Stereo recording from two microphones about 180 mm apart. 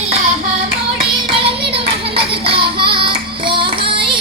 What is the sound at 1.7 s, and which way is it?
Child singing, 30° right (ahead or behind).